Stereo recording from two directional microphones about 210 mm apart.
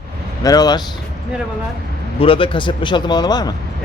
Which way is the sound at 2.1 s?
25° left (ahead or behind).